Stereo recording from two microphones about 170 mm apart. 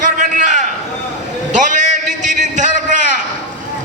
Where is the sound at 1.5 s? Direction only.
50° right (ahead or behind).